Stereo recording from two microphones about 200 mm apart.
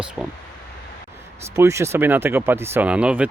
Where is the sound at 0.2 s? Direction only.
Centre (ahead or behind).